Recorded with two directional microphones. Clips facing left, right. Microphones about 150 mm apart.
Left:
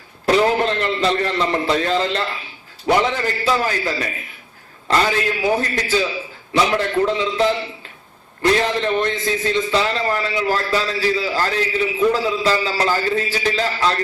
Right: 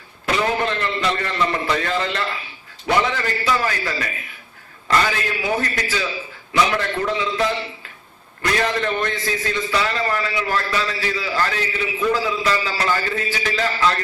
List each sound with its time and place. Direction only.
0.3 s a man's voice: 35° left (ahead or behind)